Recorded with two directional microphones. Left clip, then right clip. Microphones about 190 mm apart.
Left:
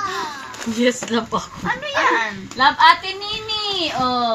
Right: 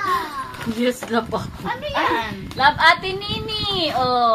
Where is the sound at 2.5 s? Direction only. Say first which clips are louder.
Left 2 dB; 10° right (ahead or behind).